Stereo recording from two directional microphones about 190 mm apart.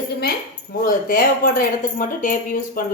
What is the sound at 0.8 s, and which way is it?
Speech, 50° left (ahead or behind).